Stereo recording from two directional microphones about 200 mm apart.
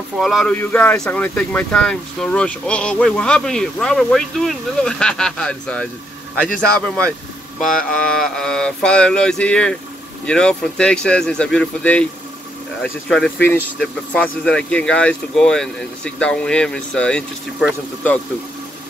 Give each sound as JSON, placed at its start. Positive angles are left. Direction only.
{"t": 0.2, "sound": "speech", "side_deg": 0}